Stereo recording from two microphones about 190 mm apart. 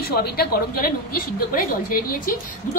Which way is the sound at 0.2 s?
55° left (ahead or behind).